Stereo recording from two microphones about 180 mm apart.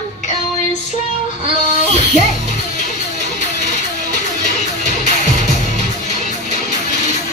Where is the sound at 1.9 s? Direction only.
40° left (ahead or behind).